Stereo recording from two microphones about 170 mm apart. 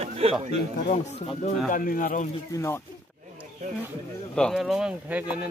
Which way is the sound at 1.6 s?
55° left (ahead or behind).